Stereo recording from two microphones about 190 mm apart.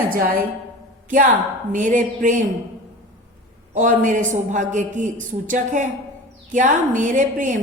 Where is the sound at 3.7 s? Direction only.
40° right (ahead or behind).